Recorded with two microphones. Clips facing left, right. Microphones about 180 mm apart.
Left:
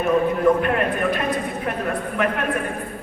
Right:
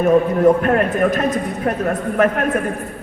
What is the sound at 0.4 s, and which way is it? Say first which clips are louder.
A man's voice: right 4 dB; 45° right (ahead or behind).